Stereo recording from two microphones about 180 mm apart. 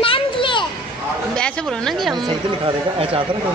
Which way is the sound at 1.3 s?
5° left (ahead or behind).